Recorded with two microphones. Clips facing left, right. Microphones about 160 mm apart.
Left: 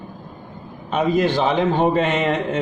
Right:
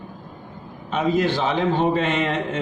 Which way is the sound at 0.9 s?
50° left (ahead or behind).